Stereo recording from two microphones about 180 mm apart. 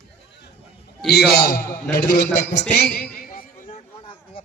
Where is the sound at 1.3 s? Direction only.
60° left (ahead or behind).